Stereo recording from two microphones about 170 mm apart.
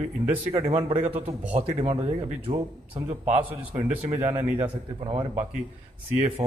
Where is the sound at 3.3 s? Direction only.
10° right (ahead or behind).